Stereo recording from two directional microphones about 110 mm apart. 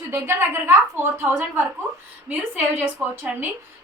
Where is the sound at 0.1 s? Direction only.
20° right (ahead or behind).